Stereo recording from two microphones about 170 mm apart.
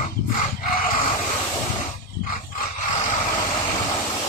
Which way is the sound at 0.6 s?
55° left (ahead or behind).